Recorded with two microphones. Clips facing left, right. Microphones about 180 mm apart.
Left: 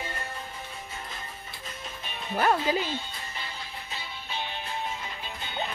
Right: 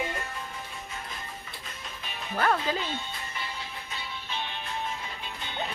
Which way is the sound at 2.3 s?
15° left (ahead or behind).